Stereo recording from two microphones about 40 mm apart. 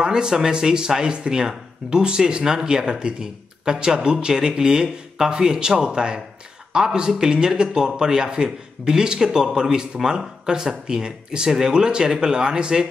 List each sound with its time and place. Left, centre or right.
0.0 s speech: centre